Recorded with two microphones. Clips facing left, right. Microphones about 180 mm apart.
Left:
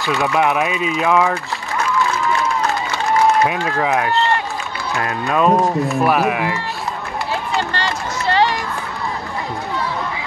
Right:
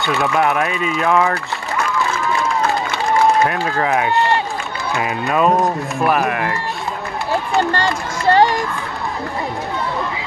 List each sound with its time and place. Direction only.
0.0 s speech: centre (ahead or behind)
3.4 s speech: centre (ahead or behind)
7.5 s run: 45° right (ahead or behind)